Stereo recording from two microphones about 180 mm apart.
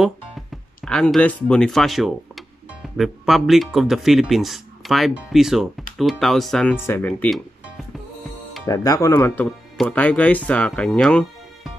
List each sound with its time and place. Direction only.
0.8 s speech: 5° left (ahead or behind)
8.6 s speech: 20° left (ahead or behind); by 11.7 s 5° left (ahead or behind)